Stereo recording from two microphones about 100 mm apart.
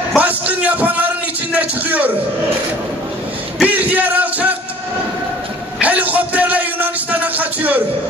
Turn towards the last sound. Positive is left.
turn(degrees=-15)  # may be behind; listen again after turning